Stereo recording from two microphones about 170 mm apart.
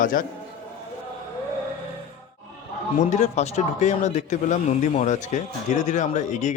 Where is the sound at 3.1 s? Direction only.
40° left (ahead or behind).